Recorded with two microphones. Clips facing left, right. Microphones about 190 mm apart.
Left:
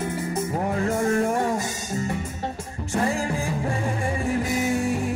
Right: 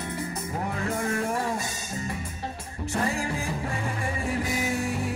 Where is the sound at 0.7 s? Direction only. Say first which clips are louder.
Left 7 dB; 35° left (ahead or behind).